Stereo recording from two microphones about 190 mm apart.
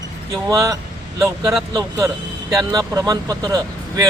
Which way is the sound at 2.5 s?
20° right (ahead or behind).